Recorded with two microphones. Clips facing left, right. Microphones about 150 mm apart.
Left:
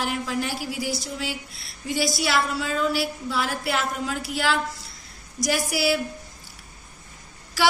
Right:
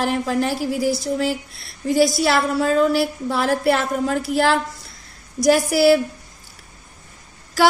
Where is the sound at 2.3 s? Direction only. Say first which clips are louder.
Right 7 dB; 50° right (ahead or behind).